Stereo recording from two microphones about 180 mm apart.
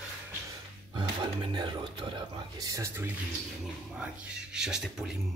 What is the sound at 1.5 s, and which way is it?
Speech, 25° right (ahead or behind).